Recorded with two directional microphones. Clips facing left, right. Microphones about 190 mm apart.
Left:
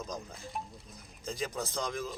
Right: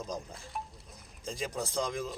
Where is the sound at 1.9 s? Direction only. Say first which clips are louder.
Right 1 dB; centre (ahead or behind).